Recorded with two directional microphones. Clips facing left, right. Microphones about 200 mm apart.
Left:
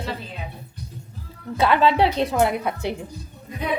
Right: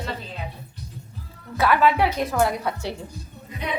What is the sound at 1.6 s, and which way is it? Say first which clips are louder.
A woman's voice: left 1 dB; 25° left (ahead or behind).